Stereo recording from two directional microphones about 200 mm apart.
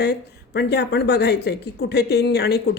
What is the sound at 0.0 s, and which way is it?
A woman's voice, 55° left (ahead or behind).